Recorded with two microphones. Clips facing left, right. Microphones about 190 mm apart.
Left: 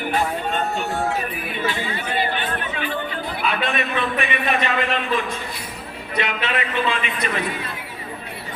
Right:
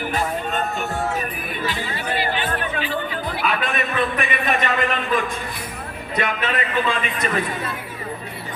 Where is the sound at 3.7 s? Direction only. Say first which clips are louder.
Right 1 dB; 45° right (ahead or behind).